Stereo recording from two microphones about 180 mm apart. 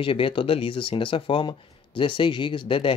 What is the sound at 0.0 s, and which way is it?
Speech, 30° left (ahead or behind).